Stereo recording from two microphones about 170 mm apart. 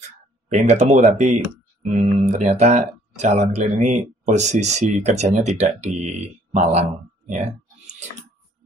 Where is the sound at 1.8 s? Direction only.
45° right (ahead or behind).